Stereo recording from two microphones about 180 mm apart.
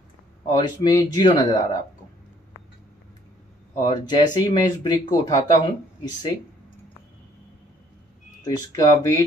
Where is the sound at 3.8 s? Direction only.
25° left (ahead or behind).